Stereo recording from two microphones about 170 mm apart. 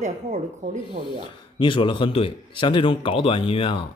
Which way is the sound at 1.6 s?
30° left (ahead or behind).